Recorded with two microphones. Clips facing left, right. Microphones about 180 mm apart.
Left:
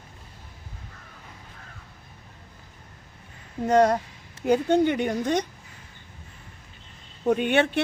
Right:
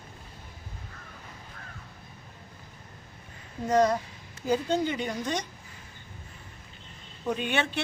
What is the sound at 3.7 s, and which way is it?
Speech, 65° left (ahead or behind).